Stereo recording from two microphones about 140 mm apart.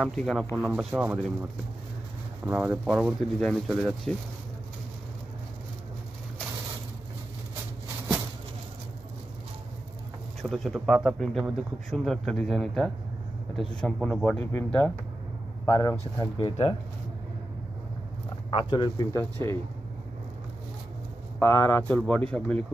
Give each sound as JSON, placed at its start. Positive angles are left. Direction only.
{"t": 0.0, "sound": "speech", "side_deg": 0}
{"t": 3.7, "sound": "speech", "side_deg": -5}
{"t": 10.4, "sound": "speech", "side_deg": 0}
{"t": 14.4, "sound": "a man's voice", "side_deg": 15}
{"t": 16.2, "sound": "speech", "side_deg": 35}
{"t": 18.5, "sound": "speech", "side_deg": 35}
{"t": 19.3, "sound": "speech", "side_deg": 20}
{"t": 21.4, "sound": "speech", "side_deg": 20}